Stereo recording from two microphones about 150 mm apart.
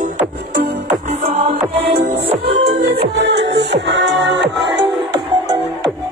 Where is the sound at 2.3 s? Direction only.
45° right (ahead or behind).